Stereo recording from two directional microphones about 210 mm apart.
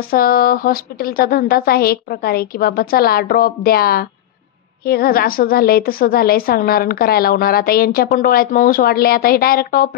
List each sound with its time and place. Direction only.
0.1 s a woman's voice: 45° left (ahead or behind)